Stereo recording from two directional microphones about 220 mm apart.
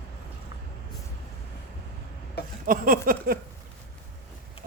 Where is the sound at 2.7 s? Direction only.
40° right (ahead or behind).